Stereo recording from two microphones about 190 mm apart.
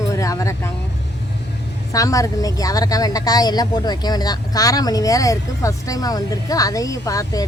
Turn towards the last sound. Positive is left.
turn(degrees=15)  # may be behind; listen again after turning